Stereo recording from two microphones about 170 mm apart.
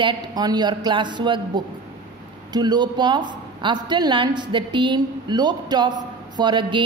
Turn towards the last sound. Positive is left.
turn(degrees=-30)  # may be behind; listen again after turning